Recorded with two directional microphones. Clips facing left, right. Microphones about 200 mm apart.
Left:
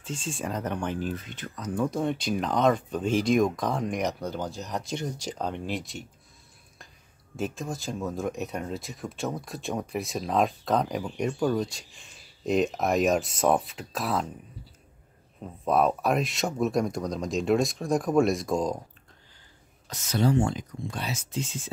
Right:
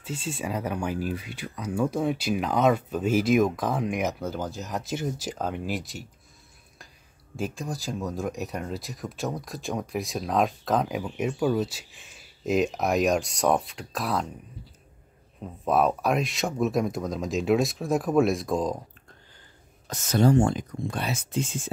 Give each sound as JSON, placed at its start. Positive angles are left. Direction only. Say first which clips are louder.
{"t": 0.0, "sound": "speech", "louder": "right 1 dB", "side_deg": -5}
{"t": 7.3, "sound": "speech", "louder": "even", "side_deg": 0}
{"t": 15.4, "sound": "speech", "louder": "even", "side_deg": 0}
{"t": 19.9, "sound": "speech", "louder": "right 4 dB", "side_deg": -45}